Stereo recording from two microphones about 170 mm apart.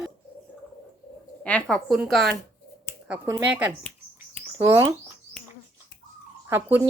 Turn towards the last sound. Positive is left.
turn(degrees=-15)  # may be behind; listen again after turning